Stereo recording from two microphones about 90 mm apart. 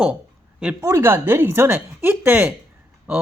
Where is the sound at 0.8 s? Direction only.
35° right (ahead or behind).